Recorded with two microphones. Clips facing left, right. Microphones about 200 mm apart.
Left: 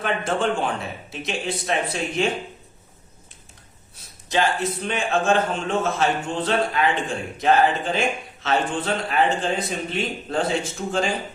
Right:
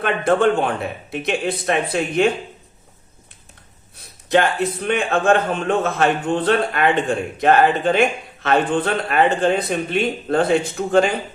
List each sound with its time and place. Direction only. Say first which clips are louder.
0.0 s a man's voice: right 7 dB; 60° right (ahead or behind)
4.3 s a man's voice: right 5 dB; 60° right (ahead or behind)